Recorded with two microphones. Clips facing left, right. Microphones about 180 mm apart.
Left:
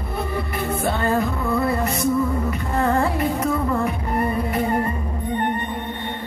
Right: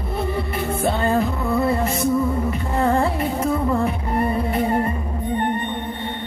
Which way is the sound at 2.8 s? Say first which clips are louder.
Right 1 dB; 25° right (ahead or behind).